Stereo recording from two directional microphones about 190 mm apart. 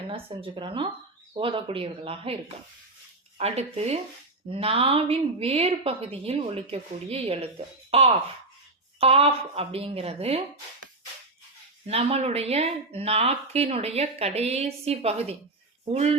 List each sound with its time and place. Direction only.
0.1 s a woman's voice: 30° right (ahead or behind)
11.9 s a woman's voice: 30° right (ahead or behind)